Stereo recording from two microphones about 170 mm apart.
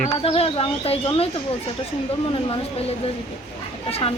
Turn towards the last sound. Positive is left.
turn(degrees=35)  # may be behind; listen again after turning